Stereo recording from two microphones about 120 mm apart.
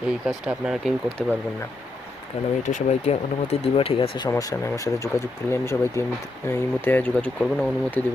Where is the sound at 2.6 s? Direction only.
75° left (ahead or behind); by 4.1 s 50° left (ahead or behind).